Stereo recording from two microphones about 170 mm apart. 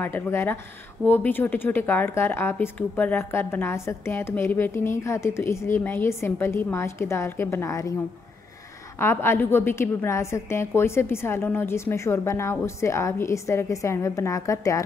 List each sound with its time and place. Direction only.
0.0 s a woman's voice: 15° left (ahead or behind)
8.9 s a woman's voice: 15° left (ahead or behind)